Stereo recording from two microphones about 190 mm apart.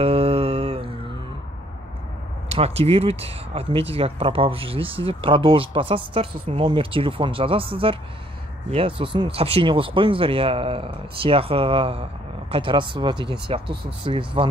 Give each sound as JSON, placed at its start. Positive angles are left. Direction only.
{"t": 0.0, "sound": "humming", "side_deg": -30}
{"t": 2.5, "sound": "speech", "side_deg": -30}